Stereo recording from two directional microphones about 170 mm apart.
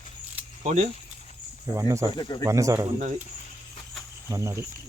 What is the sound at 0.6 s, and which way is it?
Speech, 45° right (ahead or behind).